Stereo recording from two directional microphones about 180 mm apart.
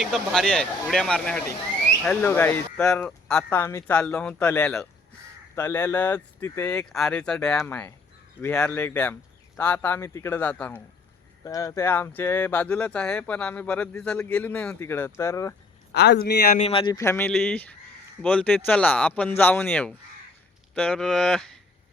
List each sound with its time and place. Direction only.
0.0 s speech: centre (ahead or behind)
5.5 s speech: 15° left (ahead or behind)
11.4 s speech: 20° left (ahead or behind)
15.9 s a man's voice: 65° left (ahead or behind)
16.6 s speech: 35° left (ahead or behind)
17.0 s speech: 15° left (ahead or behind)